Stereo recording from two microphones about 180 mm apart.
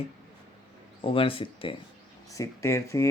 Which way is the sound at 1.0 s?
30° left (ahead or behind).